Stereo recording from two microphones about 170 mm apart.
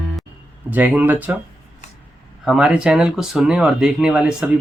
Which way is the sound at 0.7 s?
10° right (ahead or behind).